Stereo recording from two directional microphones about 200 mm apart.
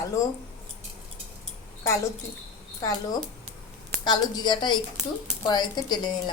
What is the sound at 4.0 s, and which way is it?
A woman's voice, 20° left (ahead or behind).